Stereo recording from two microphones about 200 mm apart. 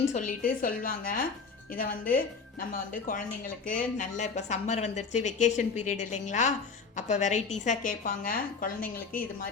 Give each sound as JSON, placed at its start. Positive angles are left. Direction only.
{"t": 0.1, "sound": "a woman's voice", "side_deg": 40}